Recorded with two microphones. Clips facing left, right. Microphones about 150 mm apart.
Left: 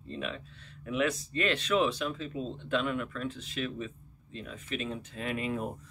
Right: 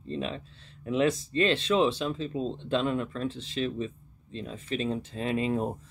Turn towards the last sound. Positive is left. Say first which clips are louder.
# right 5 dB
turn(degrees=-30)  # may be behind; listen again after turning